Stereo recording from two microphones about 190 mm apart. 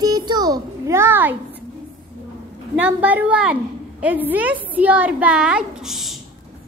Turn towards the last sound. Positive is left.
turn(degrees=0)  # may be behind; listen again after turning